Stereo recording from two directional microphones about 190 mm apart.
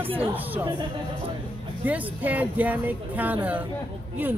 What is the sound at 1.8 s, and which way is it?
Speech, 10° right (ahead or behind).